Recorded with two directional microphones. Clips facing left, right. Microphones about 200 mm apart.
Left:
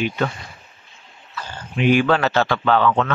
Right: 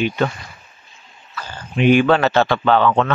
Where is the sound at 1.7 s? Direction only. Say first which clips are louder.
Right 3 dB; 25° right (ahead or behind).